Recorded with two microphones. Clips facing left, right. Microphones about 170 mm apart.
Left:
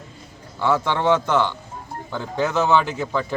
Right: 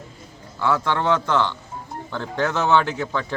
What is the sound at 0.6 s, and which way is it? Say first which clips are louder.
A man's voice: left 1 dB; 15° left (ahead or behind).